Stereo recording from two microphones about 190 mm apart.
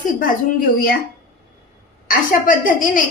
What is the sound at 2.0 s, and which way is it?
Speech, 45° left (ahead or behind).